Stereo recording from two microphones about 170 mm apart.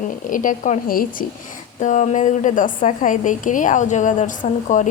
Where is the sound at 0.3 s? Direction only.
50° left (ahead or behind).